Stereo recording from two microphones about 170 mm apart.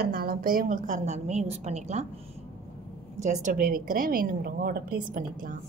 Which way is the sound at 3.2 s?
45° right (ahead or behind).